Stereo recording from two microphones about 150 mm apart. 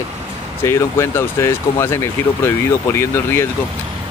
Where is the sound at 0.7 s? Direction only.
20° left (ahead or behind).